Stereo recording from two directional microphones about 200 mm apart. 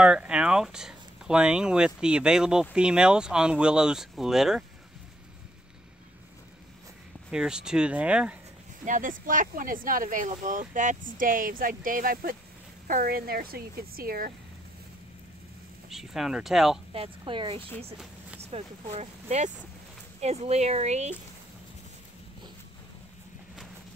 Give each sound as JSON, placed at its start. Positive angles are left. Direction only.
{"t": 0.0, "sound": "speech", "side_deg": -5}
{"t": 7.2, "sound": "speech", "side_deg": -5}
{"t": 8.8, "sound": "speech", "side_deg": -40}
{"t": 15.9, "sound": "speech", "side_deg": 0}
{"t": 16.9, "sound": "a woman's voice", "side_deg": -25}